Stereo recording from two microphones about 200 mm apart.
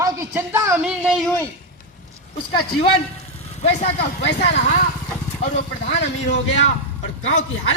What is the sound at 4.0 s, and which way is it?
Speech, 60° left (ahead or behind).